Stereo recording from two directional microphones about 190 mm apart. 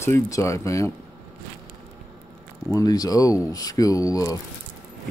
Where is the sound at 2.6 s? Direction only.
20° left (ahead or behind).